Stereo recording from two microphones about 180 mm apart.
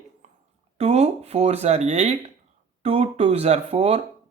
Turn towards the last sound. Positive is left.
turn(degrees=-35)  # may be behind; listen again after turning